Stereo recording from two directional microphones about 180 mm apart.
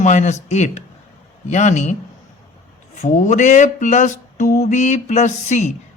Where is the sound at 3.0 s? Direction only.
40° left (ahead or behind).